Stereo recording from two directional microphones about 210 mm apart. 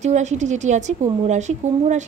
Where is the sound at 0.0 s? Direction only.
35° right (ahead or behind).